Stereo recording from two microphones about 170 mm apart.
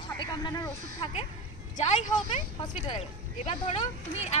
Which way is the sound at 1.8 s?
45° left (ahead or behind).